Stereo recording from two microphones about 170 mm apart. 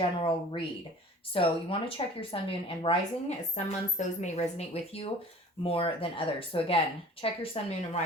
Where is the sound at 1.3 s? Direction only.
30° left (ahead or behind).